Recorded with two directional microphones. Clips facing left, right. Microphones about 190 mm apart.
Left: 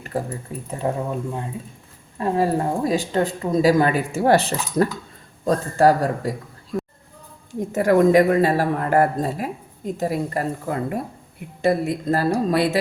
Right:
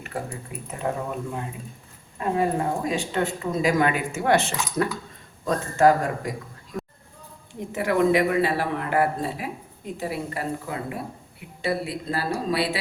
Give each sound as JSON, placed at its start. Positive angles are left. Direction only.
{"t": 0.0, "sound": "speech", "side_deg": 35}
{"t": 2.1, "sound": "speech", "side_deg": 35}
{"t": 7.7, "sound": "speech", "side_deg": 45}